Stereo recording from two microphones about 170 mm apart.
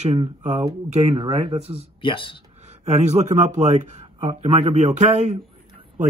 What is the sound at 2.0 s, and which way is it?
Speech, 30° left (ahead or behind).